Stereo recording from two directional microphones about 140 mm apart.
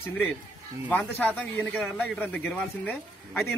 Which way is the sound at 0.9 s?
15° left (ahead or behind).